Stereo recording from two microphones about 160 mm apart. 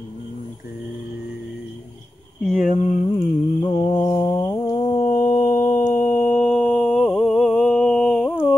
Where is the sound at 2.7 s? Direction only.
55° left (ahead or behind).